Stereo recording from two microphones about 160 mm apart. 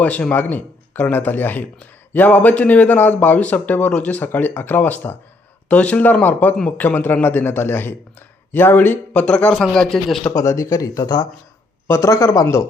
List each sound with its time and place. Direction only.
0.0 s a man's voice: 10° left (ahead or behind)
10.3 s a man's voice: 20° left (ahead or behind)